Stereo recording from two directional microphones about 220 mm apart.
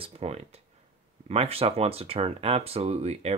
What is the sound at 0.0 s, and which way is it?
Speech, 25° right (ahead or behind).